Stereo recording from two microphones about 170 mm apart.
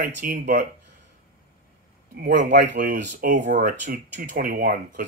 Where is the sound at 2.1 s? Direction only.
65° right (ahead or behind).